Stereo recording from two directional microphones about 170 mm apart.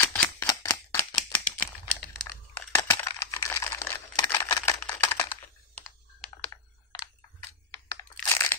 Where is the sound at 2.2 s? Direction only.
15° left (ahead or behind).